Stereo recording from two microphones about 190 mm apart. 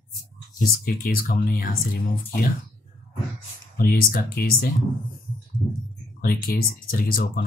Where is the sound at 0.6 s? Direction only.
50° left (ahead or behind).